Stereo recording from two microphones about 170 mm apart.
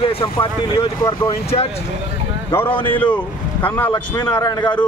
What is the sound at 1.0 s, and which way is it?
Speech, 20° left (ahead or behind).